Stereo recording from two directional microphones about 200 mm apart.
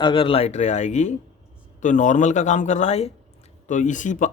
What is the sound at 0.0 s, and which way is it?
Speech, 25° left (ahead or behind).